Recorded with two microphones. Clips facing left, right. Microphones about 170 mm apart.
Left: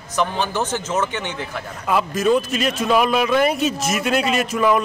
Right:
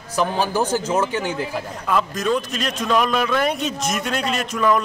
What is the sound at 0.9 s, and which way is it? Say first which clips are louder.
Speech: right 2 dB; 10° right (ahead or behind).